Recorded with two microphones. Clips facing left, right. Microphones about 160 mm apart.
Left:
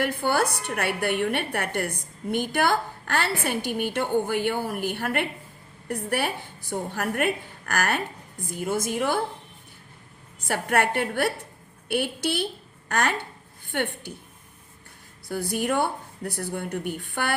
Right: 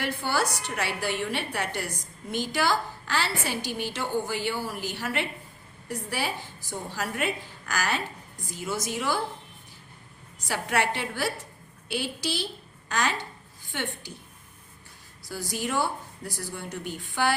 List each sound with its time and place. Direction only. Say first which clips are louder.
0.0 s a woman's voice: left 4 dB; 55° left (ahead or behind)
10.4 s a woman's voice: left 3 dB; 55° left (ahead or behind)
15.3 s a woman's voice: left 5 dB; 60° left (ahead or behind)